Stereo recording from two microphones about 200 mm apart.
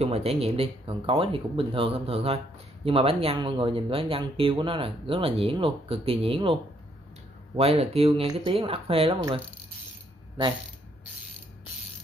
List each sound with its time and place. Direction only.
0.0 s speech: 30° right (ahead or behind)